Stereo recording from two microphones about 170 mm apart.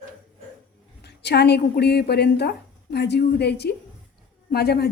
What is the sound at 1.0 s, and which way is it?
A woman's voice, 75° left (ahead or behind).